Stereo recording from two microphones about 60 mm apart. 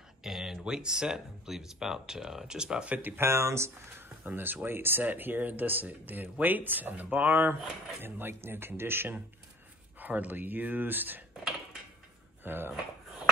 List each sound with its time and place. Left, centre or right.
0.2 s speech: centre
2.9 s speech: right
3.2 s speech: right
4.2 s speech: right
9.9 s speech: right
12.4 s speech: right